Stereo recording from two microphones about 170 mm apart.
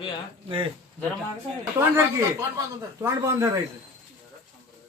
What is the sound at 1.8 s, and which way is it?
Speech, 15° right (ahead or behind).